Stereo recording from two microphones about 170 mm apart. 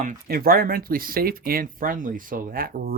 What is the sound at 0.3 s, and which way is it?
Speech, 60° right (ahead or behind).